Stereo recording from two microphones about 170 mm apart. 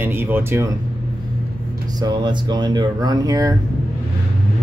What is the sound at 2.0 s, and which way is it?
Speech, 25° right (ahead or behind).